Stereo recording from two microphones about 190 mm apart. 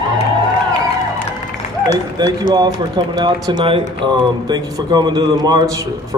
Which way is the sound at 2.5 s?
20° right (ahead or behind).